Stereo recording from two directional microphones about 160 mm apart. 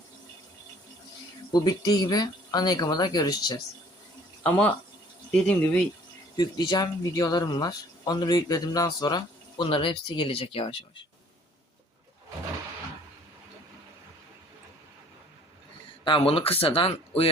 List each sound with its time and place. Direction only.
1.5 s speech: 25° left (ahead or behind)
4.4 s speech: 10° left (ahead or behind)
6.3 s speech: 25° left (ahead or behind)
16.0 s speech: 35° left (ahead or behind)